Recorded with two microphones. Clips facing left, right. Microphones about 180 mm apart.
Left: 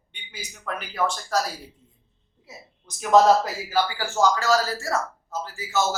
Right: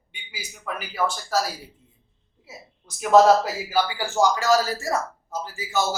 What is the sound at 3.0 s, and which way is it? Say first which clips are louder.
A man's voice: right 1 dB; 10° right (ahead or behind).